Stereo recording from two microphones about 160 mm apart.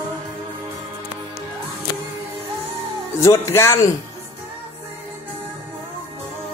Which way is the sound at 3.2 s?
20° left (ahead or behind).